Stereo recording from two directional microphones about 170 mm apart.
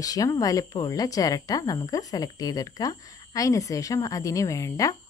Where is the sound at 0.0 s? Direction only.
20° left (ahead or behind).